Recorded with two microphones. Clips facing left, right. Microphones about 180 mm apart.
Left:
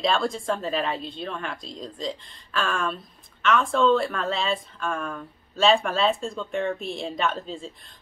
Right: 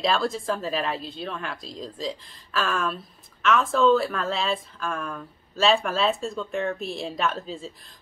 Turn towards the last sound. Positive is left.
turn(degrees=0)  # may be behind; listen again after turning